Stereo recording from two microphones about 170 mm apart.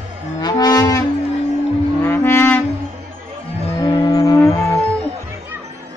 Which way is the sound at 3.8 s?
25° left (ahead or behind).